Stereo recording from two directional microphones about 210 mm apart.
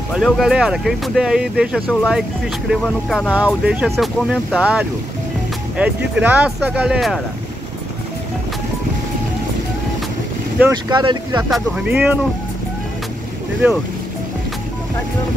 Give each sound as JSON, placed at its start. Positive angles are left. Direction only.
{"t": 0.1, "sound": "speech", "side_deg": 0}
{"t": 10.9, "sound": "speech", "side_deg": -20}
{"t": 11.4, "sound": "speech", "side_deg": -5}